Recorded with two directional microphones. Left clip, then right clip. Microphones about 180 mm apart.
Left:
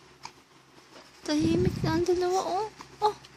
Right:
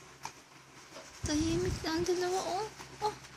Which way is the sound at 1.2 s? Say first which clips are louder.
Left 6 dB; 40° left (ahead or behind).